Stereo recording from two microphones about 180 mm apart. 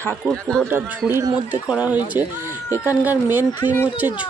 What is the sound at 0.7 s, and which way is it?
Speech, 10° right (ahead or behind).